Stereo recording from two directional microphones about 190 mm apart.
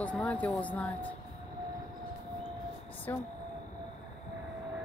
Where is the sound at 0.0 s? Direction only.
5° left (ahead or behind).